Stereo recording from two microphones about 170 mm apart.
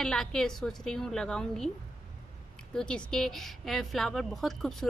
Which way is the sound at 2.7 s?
5° left (ahead or behind).